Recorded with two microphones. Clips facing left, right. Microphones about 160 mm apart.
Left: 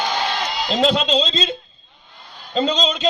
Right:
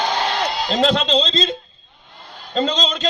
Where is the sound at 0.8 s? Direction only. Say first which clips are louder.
Even; 5° left (ahead or behind).